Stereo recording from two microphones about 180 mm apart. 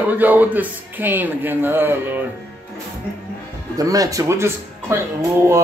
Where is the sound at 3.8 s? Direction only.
20° right (ahead or behind).